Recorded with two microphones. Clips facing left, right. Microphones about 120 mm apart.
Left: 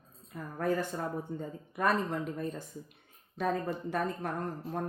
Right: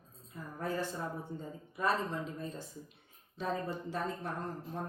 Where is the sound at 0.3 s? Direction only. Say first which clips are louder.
Left 5 dB; 55° left (ahead or behind).